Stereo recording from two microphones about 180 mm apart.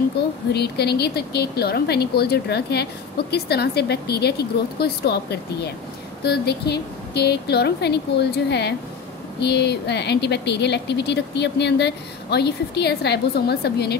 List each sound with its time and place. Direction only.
0.5 s a woman's voice: 65° left (ahead or behind)